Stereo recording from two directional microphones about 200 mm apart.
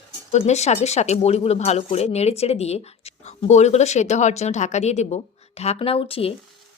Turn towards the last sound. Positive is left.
turn(degrees=30)  # may be behind; listen again after turning